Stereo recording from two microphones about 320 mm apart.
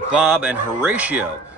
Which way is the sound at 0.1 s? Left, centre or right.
Centre.